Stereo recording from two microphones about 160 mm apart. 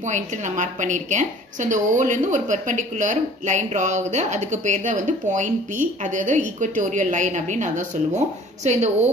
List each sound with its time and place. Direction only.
0.0 s a woman's voice: 50° right (ahead or behind)